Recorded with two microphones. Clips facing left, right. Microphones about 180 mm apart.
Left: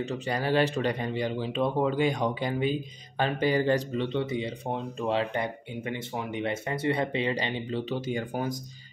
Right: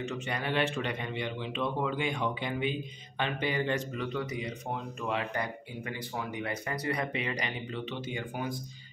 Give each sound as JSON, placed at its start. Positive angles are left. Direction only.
{"t": 0.0, "sound": "a man's voice", "side_deg": 35}